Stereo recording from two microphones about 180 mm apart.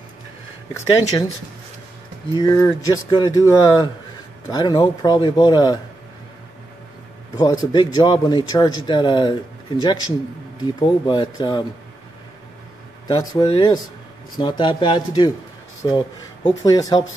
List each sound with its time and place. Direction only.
2.3 s speech: 20° left (ahead or behind)
7.3 s speech: 20° left (ahead or behind)
13.1 s speech: 20° left (ahead or behind)